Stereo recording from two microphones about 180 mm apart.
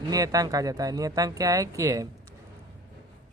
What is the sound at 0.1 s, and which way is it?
Speech, 20° right (ahead or behind).